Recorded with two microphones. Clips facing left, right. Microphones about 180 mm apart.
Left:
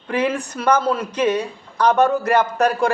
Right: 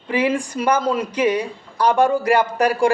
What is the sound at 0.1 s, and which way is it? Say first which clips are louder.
Speech: right 1 dB; 10° right (ahead or behind).